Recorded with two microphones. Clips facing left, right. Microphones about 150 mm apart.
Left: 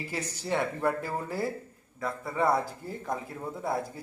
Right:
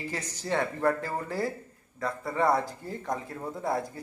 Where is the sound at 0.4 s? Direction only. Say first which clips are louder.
Right 2 dB; 15° left (ahead or behind).